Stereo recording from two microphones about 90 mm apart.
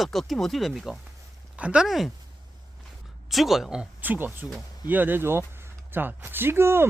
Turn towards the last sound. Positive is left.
turn(degrees=-25)  # may be behind; listen again after turning